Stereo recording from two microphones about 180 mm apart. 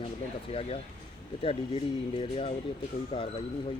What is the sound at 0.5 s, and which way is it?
Speech, 35° left (ahead or behind).